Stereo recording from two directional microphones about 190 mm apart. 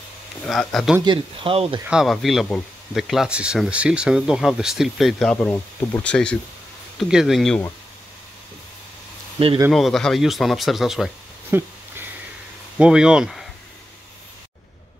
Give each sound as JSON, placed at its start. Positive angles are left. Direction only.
{"t": 0.5, "sound": "speech", "side_deg": 0}
{"t": 1.0, "sound": "speech", "side_deg": -25}
{"t": 1.9, "sound": "speech", "side_deg": 0}
{"t": 9.7, "sound": "speech", "side_deg": 0}
{"t": 11.5, "sound": "a sound", "side_deg": -10}
{"t": 12.7, "sound": "speech", "side_deg": -5}